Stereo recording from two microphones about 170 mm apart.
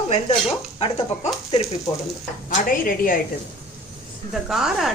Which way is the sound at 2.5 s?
55° left (ahead or behind).